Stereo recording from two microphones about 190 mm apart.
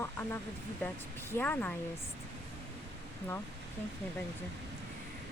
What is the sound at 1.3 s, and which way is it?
Speech, 10° left (ahead or behind).